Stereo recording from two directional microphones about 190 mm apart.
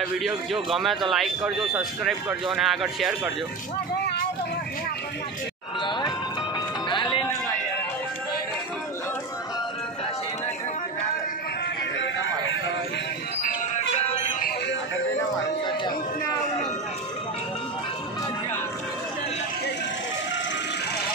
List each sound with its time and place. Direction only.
0.0 s speech: centre (ahead or behind)
5.8 s music: 25° left (ahead or behind)
12.0 s music: 85° left
13.7 s music: 35° left (ahead or behind)
15.6 s a sound: 25° left (ahead or behind)